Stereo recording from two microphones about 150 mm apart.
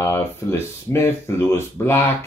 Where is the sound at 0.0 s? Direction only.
15° left (ahead or behind).